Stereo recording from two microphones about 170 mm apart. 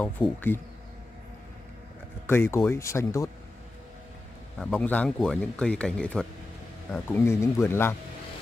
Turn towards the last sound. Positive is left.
turn(degrees=15)  # may be behind; listen again after turning